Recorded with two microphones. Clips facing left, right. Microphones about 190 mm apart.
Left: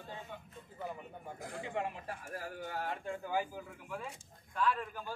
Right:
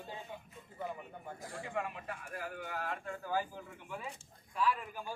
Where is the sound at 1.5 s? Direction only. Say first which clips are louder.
Left 1 dB; 20° left (ahead or behind).